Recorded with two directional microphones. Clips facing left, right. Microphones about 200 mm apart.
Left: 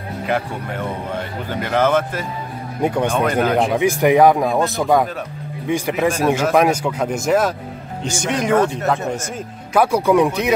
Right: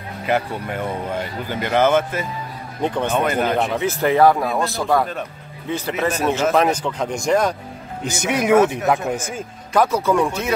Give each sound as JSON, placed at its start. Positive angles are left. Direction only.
{"t": 0.3, "sound": "speech", "side_deg": -5}
{"t": 2.8, "sound": "speech", "side_deg": 10}
{"t": 3.1, "sound": "speech", "side_deg": 0}
{"t": 3.7, "sound": "a man's voice", "side_deg": 15}
{"t": 8.0, "sound": "speech", "side_deg": -10}
{"t": 9.0, "sound": "speech", "side_deg": 0}
{"t": 9.8, "sound": "speech", "side_deg": 10}